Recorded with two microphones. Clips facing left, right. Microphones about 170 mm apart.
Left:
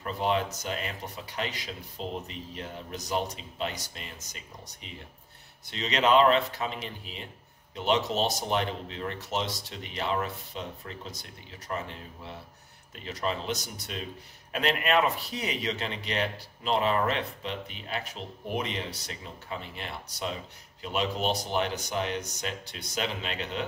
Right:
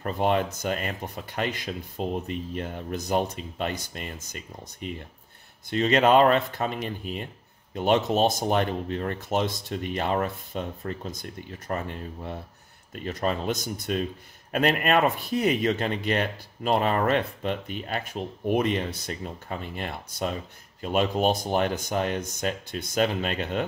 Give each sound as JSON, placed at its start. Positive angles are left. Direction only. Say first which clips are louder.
{"t": 0.0, "sound": "speech", "louder": "right 4 dB", "side_deg": -50}